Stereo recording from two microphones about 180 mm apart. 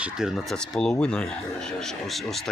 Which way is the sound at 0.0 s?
5° right (ahead or behind).